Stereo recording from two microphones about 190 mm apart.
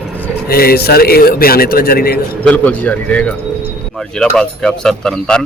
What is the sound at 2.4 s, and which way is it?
Speech, 5° left (ahead or behind).